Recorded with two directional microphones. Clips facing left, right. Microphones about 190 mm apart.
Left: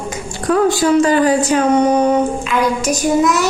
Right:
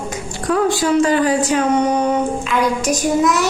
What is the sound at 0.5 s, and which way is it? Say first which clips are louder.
Speech: left 3 dB; 45° left (ahead or behind).